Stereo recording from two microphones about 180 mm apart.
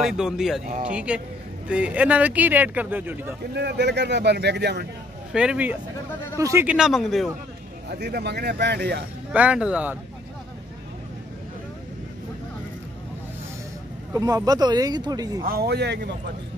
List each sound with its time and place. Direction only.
0.0 s speech: centre (ahead or behind)
3.5 s speech: 70° right (ahead or behind)
5.3 s speech: 5° right (ahead or behind)
7.9 s speech: 65° right (ahead or behind)
9.3 s speech: 5° right (ahead or behind)
14.1 s speech: 20° right (ahead or behind)
15.4 s speech: 60° right (ahead or behind)